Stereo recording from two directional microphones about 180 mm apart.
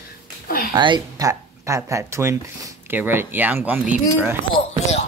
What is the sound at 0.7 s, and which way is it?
Speech, 25° right (ahead or behind).